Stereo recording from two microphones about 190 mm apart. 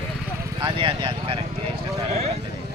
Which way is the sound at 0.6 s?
25° right (ahead or behind).